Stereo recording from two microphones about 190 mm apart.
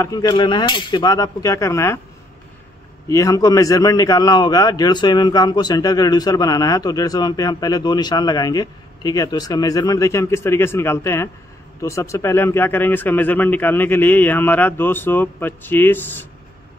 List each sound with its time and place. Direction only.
0.0 s a man's voice: 20° left (ahead or behind)
3.1 s a man's voice: 15° left (ahead or behind)